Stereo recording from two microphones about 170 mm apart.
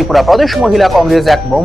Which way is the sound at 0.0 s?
Centre (ahead or behind).